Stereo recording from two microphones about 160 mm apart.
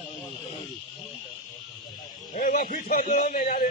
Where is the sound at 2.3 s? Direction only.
55° left (ahead or behind).